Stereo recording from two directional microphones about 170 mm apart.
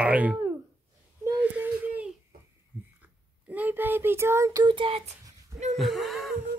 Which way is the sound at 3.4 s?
10° right (ahead or behind).